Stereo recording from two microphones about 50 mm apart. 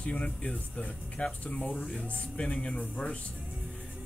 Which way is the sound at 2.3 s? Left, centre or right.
Left.